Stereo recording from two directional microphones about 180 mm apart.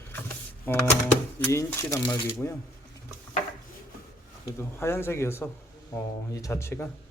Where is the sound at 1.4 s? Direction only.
15° left (ahead or behind).